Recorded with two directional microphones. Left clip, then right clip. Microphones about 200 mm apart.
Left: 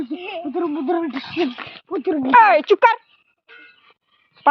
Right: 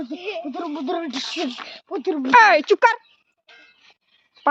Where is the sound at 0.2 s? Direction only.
45° right (ahead or behind).